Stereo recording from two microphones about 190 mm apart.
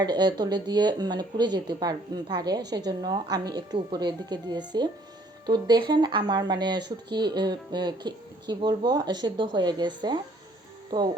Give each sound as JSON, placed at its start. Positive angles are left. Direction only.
{"t": 0.0, "sound": "speech", "side_deg": -20}